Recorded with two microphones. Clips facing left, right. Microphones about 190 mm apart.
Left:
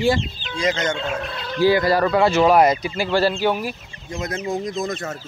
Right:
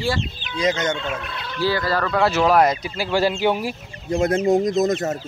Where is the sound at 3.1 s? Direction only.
15° right (ahead or behind); by 4.7 s 40° right (ahead or behind).